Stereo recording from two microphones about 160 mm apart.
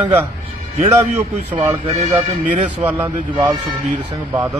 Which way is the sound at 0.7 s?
45° right (ahead or behind).